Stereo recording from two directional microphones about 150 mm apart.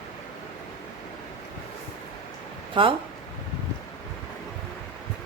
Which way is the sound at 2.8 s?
35° right (ahead or behind).